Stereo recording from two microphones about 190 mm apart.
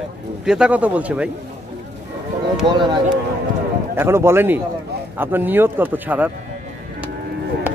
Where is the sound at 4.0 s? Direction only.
15° right (ahead or behind).